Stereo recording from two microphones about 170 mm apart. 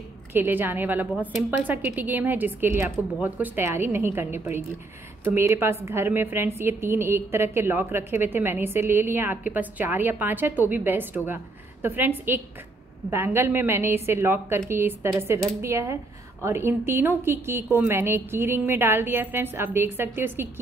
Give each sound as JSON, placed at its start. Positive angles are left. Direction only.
{"t": 0.3, "sound": "a woman's voice", "side_deg": -10}